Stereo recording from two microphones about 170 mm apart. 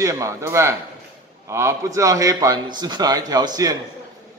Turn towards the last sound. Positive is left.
turn(degrees=-20)  # may be behind; listen again after turning